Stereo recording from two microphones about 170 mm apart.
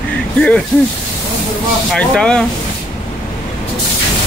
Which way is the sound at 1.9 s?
5° left (ahead or behind).